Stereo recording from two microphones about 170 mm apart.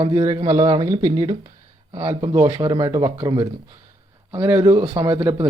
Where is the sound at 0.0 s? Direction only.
20° right (ahead or behind).